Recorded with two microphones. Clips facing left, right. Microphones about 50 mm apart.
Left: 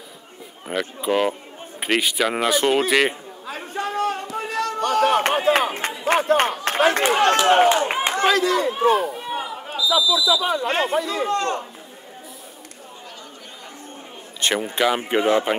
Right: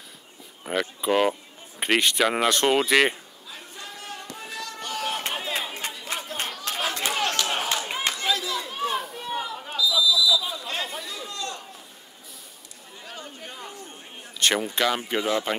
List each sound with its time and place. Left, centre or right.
0.7 s speech: centre
3.4 s a sound: left
5.5 s run: left
6.0 s a sound: left
7.1 s a man's voice: left
8.2 s a man's voice: left
9.1 s a sound: centre
10.0 s speech: left
10.4 s a man's voice: left
14.4 s speech: centre
15.0 s speech: left